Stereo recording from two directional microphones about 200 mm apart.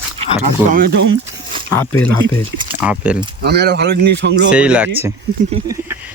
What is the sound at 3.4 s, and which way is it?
Speech, 55° right (ahead or behind).